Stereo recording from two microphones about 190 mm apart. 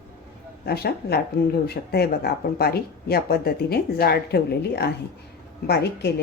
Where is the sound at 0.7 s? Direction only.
55° left (ahead or behind).